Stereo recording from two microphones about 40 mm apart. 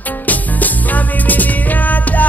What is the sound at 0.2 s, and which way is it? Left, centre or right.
Music, left.